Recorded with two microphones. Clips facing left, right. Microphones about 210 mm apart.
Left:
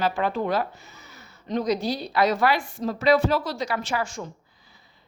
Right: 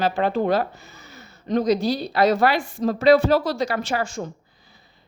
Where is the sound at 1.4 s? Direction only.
40° right (ahead or behind).